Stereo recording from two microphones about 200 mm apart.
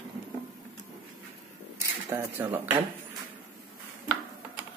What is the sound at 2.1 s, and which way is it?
Speech, 10° right (ahead or behind).